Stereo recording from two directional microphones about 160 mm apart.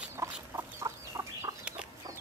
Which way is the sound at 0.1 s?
15° right (ahead or behind).